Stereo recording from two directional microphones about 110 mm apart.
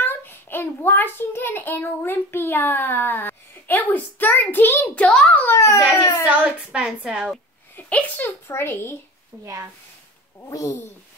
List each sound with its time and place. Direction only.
0.0 s a child's voice: 20° left (ahead or behind)
6.2 s a woman's voice: 10° right (ahead or behind)
7.7 s a child's voice: 15° left (ahead or behind)
9.4 s speech: 30° right (ahead or behind)
10.5 s speech: 30° left (ahead or behind)